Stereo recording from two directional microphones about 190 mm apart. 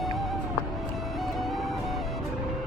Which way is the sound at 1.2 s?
Centre (ahead or behind).